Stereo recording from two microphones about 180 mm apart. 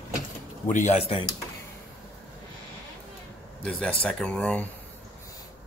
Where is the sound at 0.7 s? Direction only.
40° left (ahead or behind).